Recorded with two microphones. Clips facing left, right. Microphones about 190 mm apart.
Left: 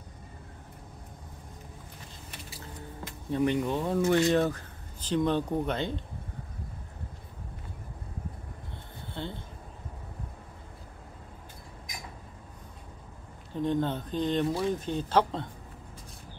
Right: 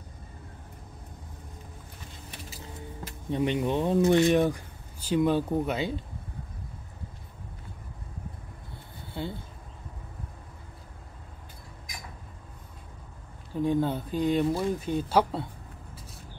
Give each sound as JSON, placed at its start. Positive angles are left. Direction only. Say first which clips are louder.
{"t": 3.3, "sound": "speech", "louder": "even", "side_deg": -20}
{"t": 9.1, "sound": "speech", "louder": "right 3 dB", "side_deg": -10}
{"t": 13.6, "sound": "speech", "louder": "right 2 dB", "side_deg": -10}